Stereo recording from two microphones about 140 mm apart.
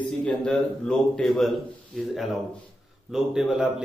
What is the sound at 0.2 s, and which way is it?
A man's voice, 5° left (ahead or behind).